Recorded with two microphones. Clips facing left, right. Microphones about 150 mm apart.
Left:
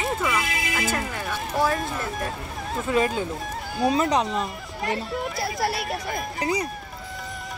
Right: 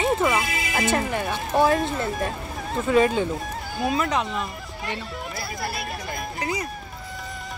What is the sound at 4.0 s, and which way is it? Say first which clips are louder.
Speech: left 2 dB; 35° left (ahead or behind).